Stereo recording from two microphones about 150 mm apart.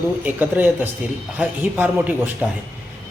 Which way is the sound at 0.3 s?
10° right (ahead or behind).